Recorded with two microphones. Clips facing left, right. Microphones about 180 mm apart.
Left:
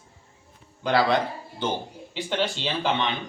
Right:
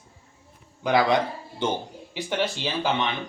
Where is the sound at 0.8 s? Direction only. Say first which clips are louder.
Right 1 dB; 15° right (ahead or behind).